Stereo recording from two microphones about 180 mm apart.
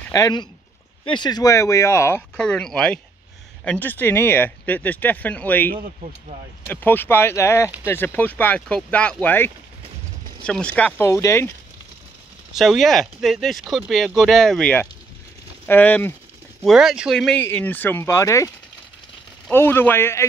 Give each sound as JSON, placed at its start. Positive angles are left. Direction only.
{"t": 0.1, "sound": "speech", "side_deg": 20}
{"t": 2.3, "sound": "speech", "side_deg": 5}
{"t": 6.7, "sound": "speech", "side_deg": 10}
{"t": 12.5, "sound": "speech", "side_deg": 0}
{"t": 16.6, "sound": "speech", "side_deg": 0}
{"t": 19.5, "sound": "speech", "side_deg": 10}